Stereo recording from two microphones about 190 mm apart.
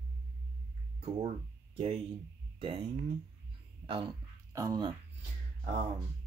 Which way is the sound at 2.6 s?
30° right (ahead or behind).